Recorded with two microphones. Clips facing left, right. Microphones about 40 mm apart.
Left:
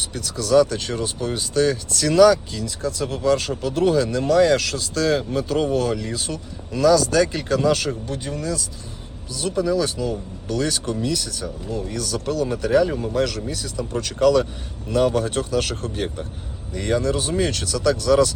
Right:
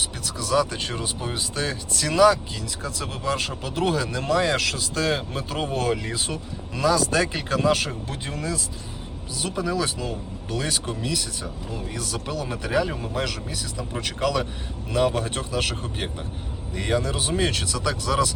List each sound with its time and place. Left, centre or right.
0.2 s speech: right
8.3 s speech: right; by 18.3 s centre